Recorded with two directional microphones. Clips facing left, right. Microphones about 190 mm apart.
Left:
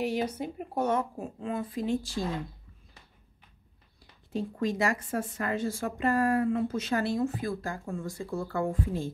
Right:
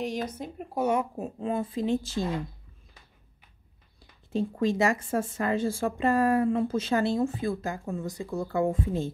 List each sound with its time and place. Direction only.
0.0 s speech: 5° left (ahead or behind)
0.7 s speech: 10° right (ahead or behind)
4.3 s speech: 25° right (ahead or behind)